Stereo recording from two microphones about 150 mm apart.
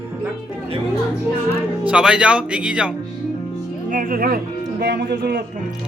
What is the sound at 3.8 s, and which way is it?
Speech, 65° right (ahead or behind).